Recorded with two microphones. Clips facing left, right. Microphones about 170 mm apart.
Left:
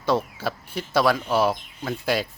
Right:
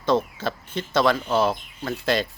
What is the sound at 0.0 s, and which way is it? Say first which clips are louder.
Speech: right 1 dB; 10° left (ahead or behind).